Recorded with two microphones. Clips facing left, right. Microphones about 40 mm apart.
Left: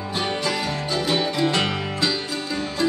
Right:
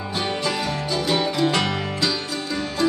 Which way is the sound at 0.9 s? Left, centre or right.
Left.